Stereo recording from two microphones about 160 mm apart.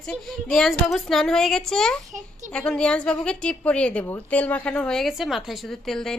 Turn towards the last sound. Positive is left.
turn(degrees=0)  # may be behind; listen again after turning